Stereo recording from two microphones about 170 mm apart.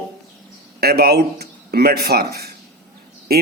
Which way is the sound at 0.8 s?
65° right (ahead or behind).